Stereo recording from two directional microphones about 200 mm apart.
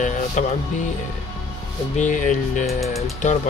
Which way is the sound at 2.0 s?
40° left (ahead or behind).